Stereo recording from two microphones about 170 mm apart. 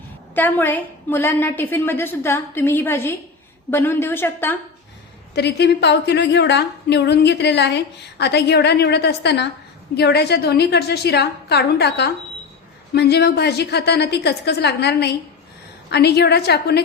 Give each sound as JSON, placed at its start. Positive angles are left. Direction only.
{"t": 0.3, "sound": "a woman's voice", "side_deg": 10}
{"t": 5.3, "sound": "a woman's voice", "side_deg": 80}